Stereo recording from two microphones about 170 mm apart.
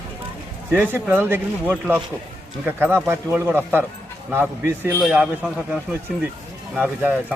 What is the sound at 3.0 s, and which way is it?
A man's voice, 15° right (ahead or behind).